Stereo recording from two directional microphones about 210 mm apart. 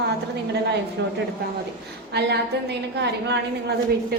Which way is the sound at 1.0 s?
55° right (ahead or behind).